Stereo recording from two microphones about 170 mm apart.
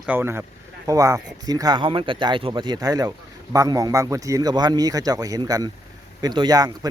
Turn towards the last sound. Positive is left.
turn(degrees=-20)  # may be behind; listen again after turning